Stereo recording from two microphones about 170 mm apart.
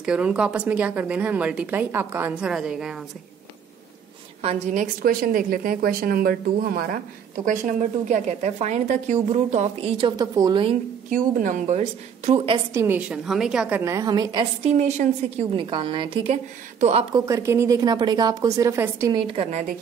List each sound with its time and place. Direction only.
0.0 s a woman's voice: 5° right (ahead or behind)
4.4 s a woman's voice: 35° right (ahead or behind)
5.0 s speech: 60° right (ahead or behind)
7.4 s a woman's voice: 50° right (ahead or behind); by 10.8 s 30° right (ahead or behind)
11.1 s a woman's voice: 50° right (ahead or behind); by 12.6 s 35° right (ahead or behind)
12.7 s a woman's voice: 10° right (ahead or behind)
14.6 s a woman's voice: 40° right (ahead or behind)
17.1 s a woman's voice: 15° right (ahead or behind)
19.2 s a woman's voice: 35° right (ahead or behind)